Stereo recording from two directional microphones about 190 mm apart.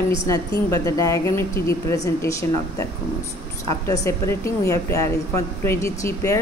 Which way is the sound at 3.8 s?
15° left (ahead or behind).